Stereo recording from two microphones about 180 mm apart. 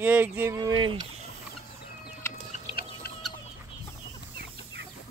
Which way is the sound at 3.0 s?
60° left (ahead or behind).